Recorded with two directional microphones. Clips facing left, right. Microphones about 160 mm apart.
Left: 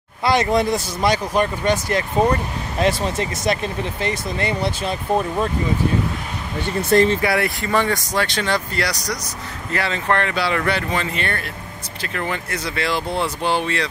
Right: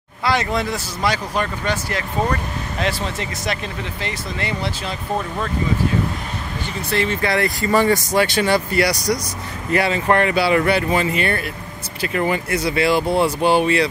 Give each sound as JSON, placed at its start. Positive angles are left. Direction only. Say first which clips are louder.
{"t": 0.2, "sound": "speech", "louder": "left 3 dB", "side_deg": 20}
{"t": 4.1, "sound": "speech", "louder": "left 3 dB", "side_deg": 20}
{"t": 6.9, "sound": "speech", "louder": "left 6 dB", "side_deg": 40}
{"t": 7.2, "sound": "speech", "louder": "even", "side_deg": 10}
{"t": 7.7, "sound": "speech", "louder": "right 4 dB", "side_deg": -5}